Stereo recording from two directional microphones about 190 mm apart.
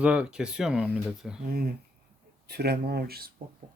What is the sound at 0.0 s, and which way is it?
Speech, 5° right (ahead or behind).